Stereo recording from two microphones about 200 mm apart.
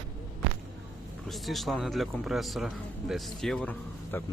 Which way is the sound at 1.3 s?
Centre (ahead or behind).